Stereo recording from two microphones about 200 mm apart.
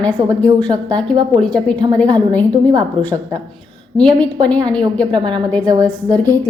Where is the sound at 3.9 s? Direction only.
5° left (ahead or behind).